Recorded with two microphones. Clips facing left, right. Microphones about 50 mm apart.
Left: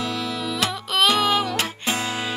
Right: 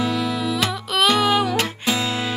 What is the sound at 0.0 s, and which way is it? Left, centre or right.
Music, centre.